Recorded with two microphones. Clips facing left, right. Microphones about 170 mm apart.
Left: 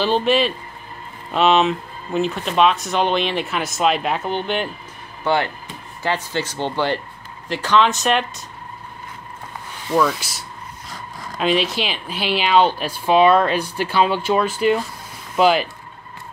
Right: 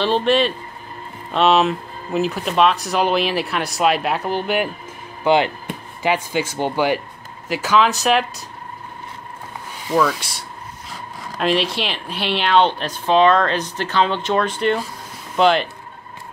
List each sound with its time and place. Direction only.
0.0 s speech: centre (ahead or behind)
5.2 s speech: 15° right (ahead or behind)
11.3 s speech: centre (ahead or behind)